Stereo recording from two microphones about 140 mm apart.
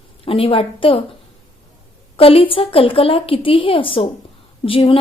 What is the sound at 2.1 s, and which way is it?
A woman's voice, 40° left (ahead or behind).